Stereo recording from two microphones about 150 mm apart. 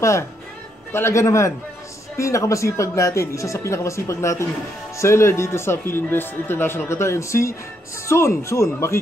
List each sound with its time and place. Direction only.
0.9 s speech: 20° left (ahead or behind)